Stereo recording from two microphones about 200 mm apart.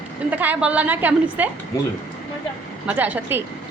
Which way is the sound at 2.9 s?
10° right (ahead or behind).